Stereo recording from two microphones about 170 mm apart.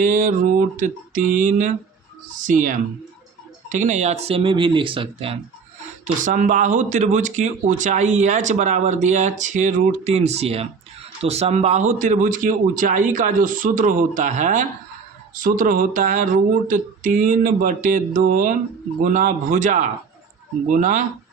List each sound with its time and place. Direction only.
0.0 s speech: 50° right (ahead or behind); by 5.4 s 30° right (ahead or behind)
6.1 s speech: 50° right (ahead or behind)